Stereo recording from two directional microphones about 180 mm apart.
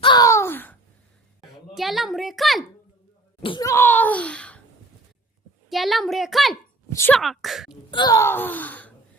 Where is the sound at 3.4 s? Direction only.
25° left (ahead or behind).